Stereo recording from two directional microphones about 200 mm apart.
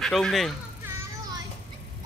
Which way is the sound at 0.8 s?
15° right (ahead or behind).